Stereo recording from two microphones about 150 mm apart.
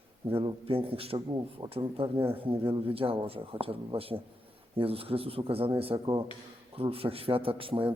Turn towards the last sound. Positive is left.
turn(degrees=-35)  # may be behind; listen again after turning